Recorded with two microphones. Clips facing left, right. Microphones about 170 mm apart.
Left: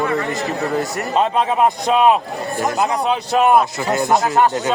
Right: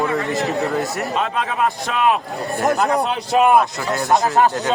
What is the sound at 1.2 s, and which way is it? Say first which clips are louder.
Speech: left 6 dB; 25° left (ahead or behind).